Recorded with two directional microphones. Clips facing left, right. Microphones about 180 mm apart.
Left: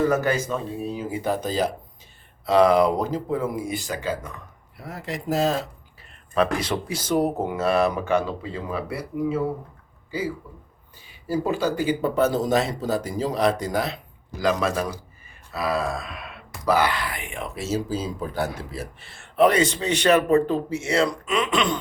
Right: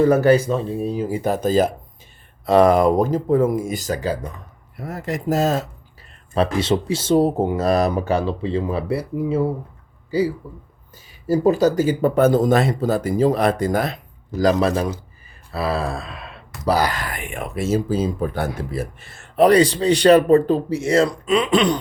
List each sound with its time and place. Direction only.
0.1 s speech: 30° right (ahead or behind)
6.3 s speech: 30° right (ahead or behind)